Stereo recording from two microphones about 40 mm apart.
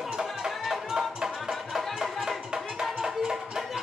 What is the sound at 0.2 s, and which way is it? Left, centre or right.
Music, centre.